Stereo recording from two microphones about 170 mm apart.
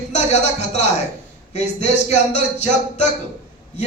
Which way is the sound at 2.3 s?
40° left (ahead or behind).